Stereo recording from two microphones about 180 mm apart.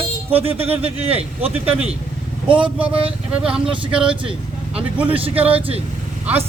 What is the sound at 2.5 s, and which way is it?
A man's voice, 5° right (ahead or behind).